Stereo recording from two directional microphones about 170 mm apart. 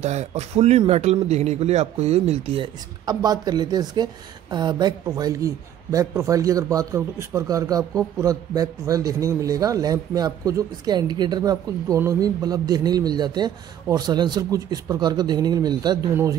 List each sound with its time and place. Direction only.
0.0 s speech: 40° right (ahead or behind); by 16.0 s 25° right (ahead or behind)